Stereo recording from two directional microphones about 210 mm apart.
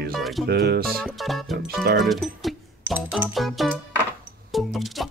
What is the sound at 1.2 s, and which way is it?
Music, centre (ahead or behind).